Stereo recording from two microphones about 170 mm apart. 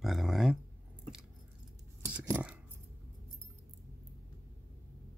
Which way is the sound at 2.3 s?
10° right (ahead or behind).